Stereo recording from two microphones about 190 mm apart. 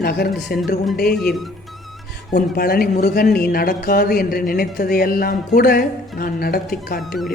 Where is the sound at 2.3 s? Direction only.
50° left (ahead or behind).